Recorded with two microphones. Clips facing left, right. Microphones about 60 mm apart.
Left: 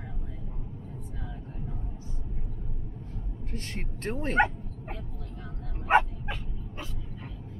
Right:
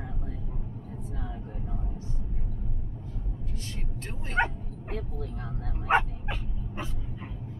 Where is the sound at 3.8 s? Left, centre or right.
Left.